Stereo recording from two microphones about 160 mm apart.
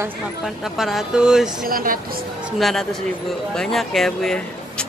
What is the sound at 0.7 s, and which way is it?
Speech, centre (ahead or behind).